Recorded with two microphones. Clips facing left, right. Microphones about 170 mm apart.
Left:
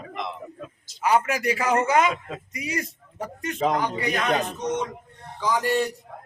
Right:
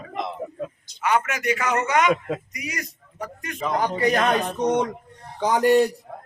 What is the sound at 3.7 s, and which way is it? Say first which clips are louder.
A man's voice: right 5 dB; 40° right (ahead or behind).